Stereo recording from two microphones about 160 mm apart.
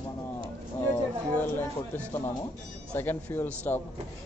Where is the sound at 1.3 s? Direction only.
10° left (ahead or behind).